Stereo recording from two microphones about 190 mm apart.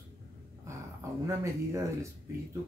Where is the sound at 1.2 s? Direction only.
15° right (ahead or behind).